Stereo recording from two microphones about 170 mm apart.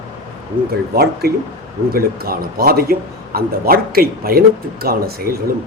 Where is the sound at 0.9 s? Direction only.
65° right (ahead or behind).